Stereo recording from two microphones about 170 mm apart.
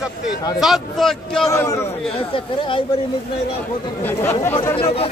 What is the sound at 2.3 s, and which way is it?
Speech, 30° left (ahead or behind).